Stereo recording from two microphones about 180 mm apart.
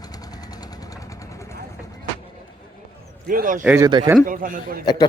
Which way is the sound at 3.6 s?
15° right (ahead or behind).